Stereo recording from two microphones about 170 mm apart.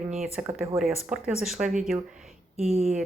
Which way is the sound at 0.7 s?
15° right (ahead or behind).